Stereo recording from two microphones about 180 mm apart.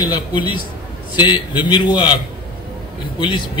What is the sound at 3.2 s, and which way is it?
Speech, 25° left (ahead or behind).